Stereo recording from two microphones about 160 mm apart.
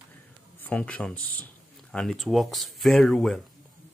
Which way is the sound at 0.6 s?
10° left (ahead or behind).